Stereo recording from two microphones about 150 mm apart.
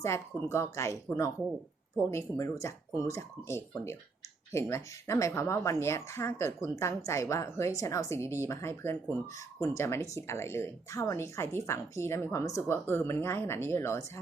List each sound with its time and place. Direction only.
0.0 s a woman's voice: 20° left (ahead or behind)